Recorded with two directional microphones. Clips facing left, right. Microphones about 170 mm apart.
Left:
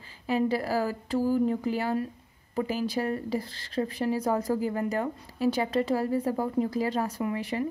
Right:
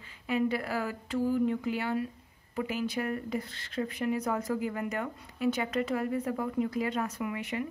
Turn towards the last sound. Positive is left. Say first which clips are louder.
# left 4 dB
turn(degrees=35)  # may be behind; listen again after turning